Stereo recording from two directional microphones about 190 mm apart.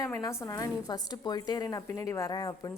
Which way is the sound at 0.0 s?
15° left (ahead or behind).